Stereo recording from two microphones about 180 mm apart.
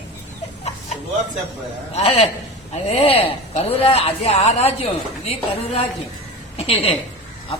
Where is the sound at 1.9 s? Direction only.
35° left (ahead or behind).